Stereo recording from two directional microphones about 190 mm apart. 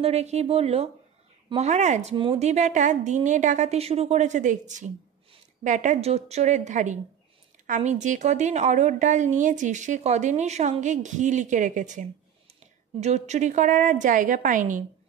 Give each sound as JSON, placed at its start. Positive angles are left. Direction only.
{"t": 0.0, "sound": "a woman's voice", "side_deg": -35}